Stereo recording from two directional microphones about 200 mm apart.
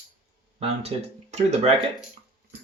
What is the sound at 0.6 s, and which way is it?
Speech, 35° right (ahead or behind).